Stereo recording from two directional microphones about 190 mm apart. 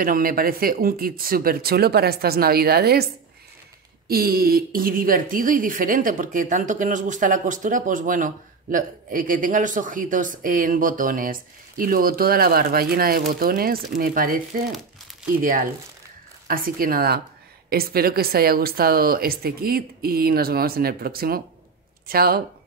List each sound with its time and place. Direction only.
0.0 s speech: 50° right (ahead or behind)
4.1 s speech: 50° right (ahead or behind)
15.4 s speech: 50° right (ahead or behind)